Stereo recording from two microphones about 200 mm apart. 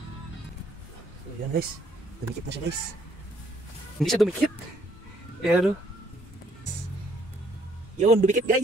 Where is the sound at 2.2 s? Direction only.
55° right (ahead or behind).